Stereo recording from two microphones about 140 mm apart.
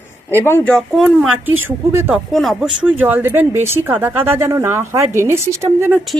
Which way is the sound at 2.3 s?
Centre (ahead or behind).